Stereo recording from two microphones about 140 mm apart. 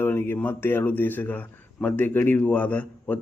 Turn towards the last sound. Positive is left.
turn(degrees=10)  # may be behind; listen again after turning